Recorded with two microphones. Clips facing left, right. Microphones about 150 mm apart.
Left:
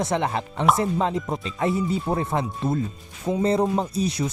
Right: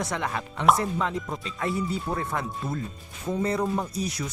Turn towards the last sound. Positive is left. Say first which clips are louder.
# left 6 dB
turn(degrees=25)  # may be behind; listen again after turning